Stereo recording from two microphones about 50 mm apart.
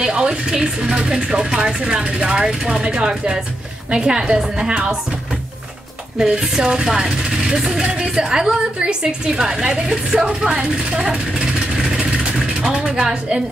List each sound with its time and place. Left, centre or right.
0.0 s a woman's voice: centre
6.1 s a woman's voice: centre
11.8 s a sound: centre